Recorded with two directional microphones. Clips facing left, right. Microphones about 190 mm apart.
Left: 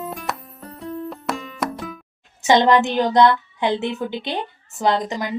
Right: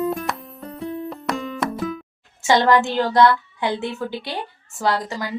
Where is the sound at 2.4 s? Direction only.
20° left (ahead or behind).